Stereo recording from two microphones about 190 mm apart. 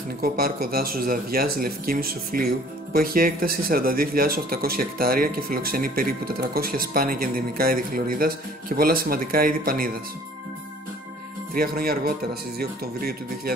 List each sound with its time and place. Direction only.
0.2 s speech: 50° right (ahead or behind)
11.5 s speech: 50° right (ahead or behind)